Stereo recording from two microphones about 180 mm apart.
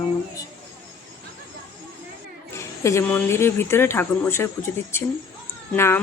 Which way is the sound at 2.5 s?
15° left (ahead or behind).